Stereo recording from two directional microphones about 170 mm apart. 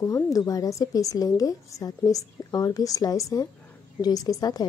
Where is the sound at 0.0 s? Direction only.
20° left (ahead or behind).